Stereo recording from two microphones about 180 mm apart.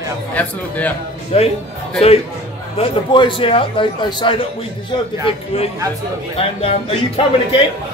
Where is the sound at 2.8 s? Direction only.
30° left (ahead or behind).